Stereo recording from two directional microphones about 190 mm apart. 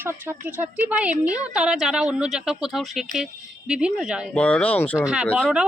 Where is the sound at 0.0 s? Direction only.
10° right (ahead or behind); by 4.9 s 10° left (ahead or behind).